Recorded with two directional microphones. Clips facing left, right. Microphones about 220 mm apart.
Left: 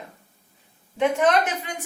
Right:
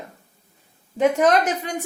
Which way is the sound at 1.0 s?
40° right (ahead or behind).